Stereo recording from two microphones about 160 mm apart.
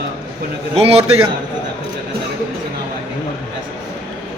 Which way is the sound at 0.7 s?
40° right (ahead or behind).